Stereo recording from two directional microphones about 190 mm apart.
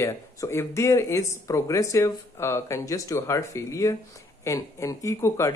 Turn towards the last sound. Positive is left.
turn(degrees=15)  # may be behind; listen again after turning